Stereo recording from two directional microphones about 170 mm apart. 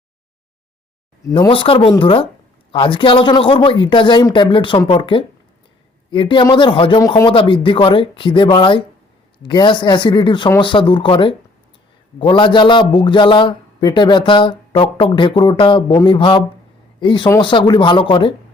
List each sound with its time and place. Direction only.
1.3 s a man's voice: 30° left (ahead or behind)